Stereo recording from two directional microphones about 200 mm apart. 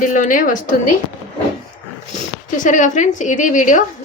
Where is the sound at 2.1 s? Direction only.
40° left (ahead or behind).